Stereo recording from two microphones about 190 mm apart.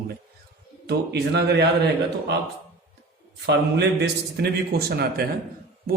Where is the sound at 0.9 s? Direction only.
60° right (ahead or behind).